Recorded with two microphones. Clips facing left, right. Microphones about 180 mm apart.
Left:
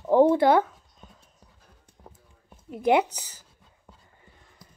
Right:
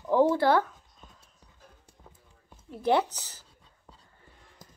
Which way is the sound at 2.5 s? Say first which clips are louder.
Left 3 dB; 15° left (ahead or behind).